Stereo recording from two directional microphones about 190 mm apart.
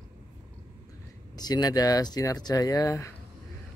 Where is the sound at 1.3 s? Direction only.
20° left (ahead or behind).